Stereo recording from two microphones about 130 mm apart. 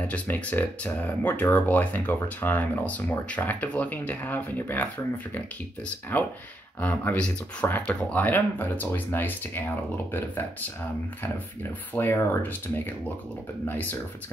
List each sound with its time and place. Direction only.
0.0 s speech: 10° left (ahead or behind)
11.2 s speech: 15° left (ahead or behind)